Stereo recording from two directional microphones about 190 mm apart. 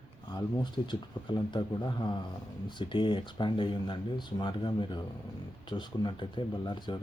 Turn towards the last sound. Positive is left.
turn(degrees=25)  # may be behind; listen again after turning